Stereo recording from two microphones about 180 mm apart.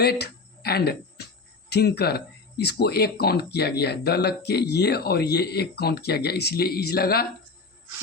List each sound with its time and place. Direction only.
0.0 s speech: 65° left (ahead or behind)